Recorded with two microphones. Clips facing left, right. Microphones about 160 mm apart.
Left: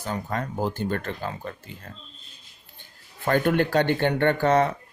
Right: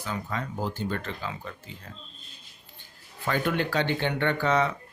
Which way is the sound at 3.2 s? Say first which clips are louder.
Left 5 dB; 50° left (ahead or behind).